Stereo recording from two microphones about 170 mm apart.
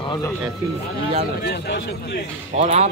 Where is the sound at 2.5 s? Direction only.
40° right (ahead or behind).